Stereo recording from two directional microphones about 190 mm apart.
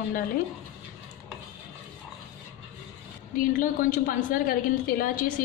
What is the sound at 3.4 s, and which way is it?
A woman's voice, 45° left (ahead or behind).